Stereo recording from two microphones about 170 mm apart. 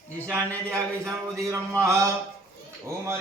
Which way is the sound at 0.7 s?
20° right (ahead or behind).